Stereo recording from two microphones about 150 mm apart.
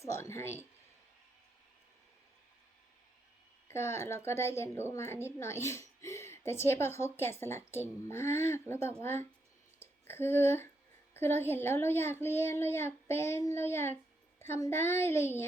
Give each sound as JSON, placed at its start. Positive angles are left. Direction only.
{"t": 0.0, "sound": "speech", "side_deg": 20}
{"t": 3.7, "sound": "a woman's voice", "side_deg": 15}